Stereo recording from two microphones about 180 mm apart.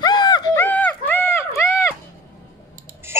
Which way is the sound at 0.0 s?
25° left (ahead or behind).